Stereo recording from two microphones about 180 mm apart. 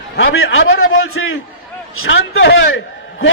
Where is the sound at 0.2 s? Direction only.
90° left.